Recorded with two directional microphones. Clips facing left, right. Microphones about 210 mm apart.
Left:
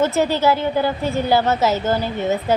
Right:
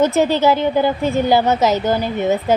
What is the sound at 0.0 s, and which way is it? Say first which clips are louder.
A woman's voice: right 3 dB; 20° right (ahead or behind).